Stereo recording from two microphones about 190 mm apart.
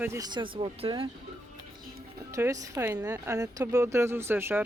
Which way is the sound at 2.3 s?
15° right (ahead or behind).